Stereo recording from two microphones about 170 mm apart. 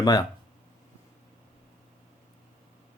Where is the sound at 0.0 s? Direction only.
20° left (ahead or behind).